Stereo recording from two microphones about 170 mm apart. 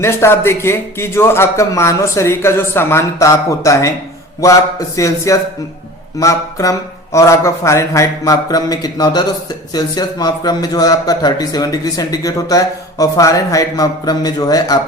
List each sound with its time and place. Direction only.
0.0 s a man's voice: 15° left (ahead or behind)